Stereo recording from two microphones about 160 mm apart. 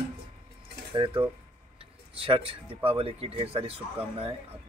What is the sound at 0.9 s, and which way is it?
Music, 30° right (ahead or behind).